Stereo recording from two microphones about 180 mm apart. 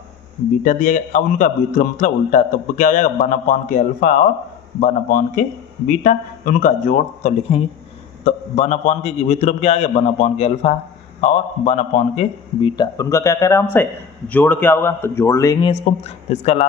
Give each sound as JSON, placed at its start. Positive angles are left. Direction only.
{"t": 0.6, "sound": "a man's voice", "side_deg": 45}
{"t": 12.7, "sound": "speech", "side_deg": 20}
{"t": 15.7, "sound": "a man's voice", "side_deg": 35}